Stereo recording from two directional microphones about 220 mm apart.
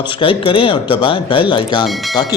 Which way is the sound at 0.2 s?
25° left (ahead or behind).